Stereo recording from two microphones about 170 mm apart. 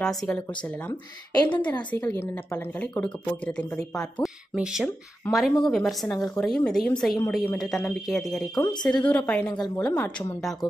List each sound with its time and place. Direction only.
0.0 s speech: centre (ahead or behind)
0.8 s a woman's voice: 25° left (ahead or behind)
1.6 s a woman's voice: 10° left (ahead or behind)